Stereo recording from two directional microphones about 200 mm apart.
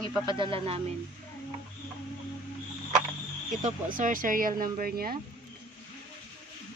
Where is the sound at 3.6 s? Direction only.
40° right (ahead or behind).